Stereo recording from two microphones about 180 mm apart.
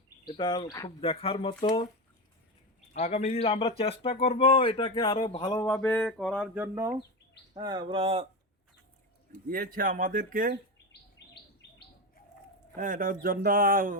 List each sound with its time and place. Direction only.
0.3 s speech: 25° left (ahead or behind)
2.9 s speech: 35° left (ahead or behind); by 6.9 s 10° right (ahead or behind)
7.5 s speech: 25° right (ahead or behind)
9.5 s speech: 55° right (ahead or behind)
10.9 s chirp: 70° left (ahead or behind)
12.7 s speech: 45° right (ahead or behind)